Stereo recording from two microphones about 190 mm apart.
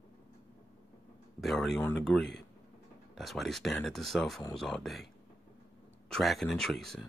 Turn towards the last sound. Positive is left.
turn(degrees=0)  # may be behind; listen again after turning